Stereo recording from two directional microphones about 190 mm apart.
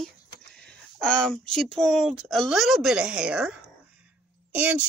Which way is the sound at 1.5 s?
Centre (ahead or behind).